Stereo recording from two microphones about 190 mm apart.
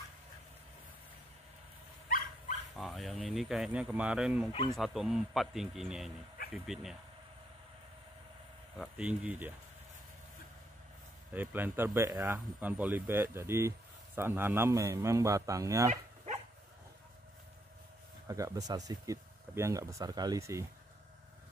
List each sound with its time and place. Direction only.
2.0 s dog: 45° left (ahead or behind)
2.7 s speech: centre (ahead or behind)
4.5 s speech: 25° left (ahead or behind)
4.7 s speech: centre (ahead or behind)
8.7 s speech: centre (ahead or behind)
11.3 s speech: 10° right (ahead or behind)
18.2 s speech: 20° right (ahead or behind)